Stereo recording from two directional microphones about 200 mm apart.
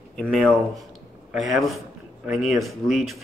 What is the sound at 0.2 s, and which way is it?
Speech, 5° left (ahead or behind).